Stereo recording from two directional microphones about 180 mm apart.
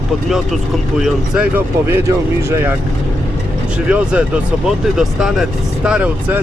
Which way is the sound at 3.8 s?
5° right (ahead or behind).